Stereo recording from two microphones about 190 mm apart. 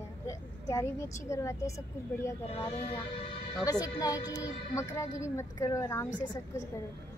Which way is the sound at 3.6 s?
20° left (ahead or behind).